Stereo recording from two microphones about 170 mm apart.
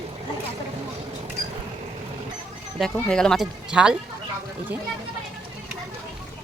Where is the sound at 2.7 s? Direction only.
Centre (ahead or behind).